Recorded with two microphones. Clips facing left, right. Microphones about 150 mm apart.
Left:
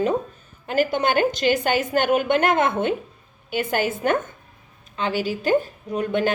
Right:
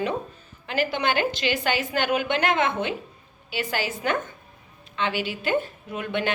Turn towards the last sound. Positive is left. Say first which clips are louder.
# left 5 dB
turn(degrees=40)  # may be behind; listen again after turning